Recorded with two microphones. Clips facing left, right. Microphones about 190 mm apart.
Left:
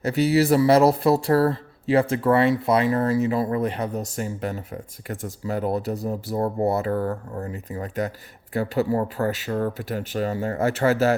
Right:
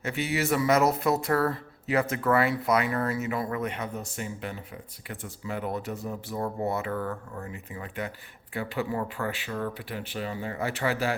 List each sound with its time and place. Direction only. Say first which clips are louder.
0.0 s speech: left 10 dB; 35° left (ahead or behind)